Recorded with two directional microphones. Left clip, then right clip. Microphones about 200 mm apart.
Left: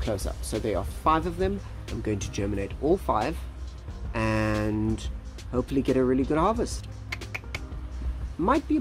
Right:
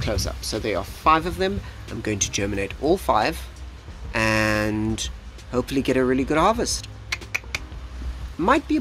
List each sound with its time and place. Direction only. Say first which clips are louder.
0.0 s speech: right 4 dB; 5° left (ahead or behind)